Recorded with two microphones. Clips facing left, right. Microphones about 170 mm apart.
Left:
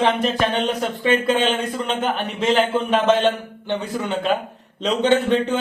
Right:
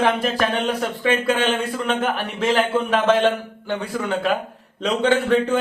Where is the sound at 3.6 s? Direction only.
30° left (ahead or behind).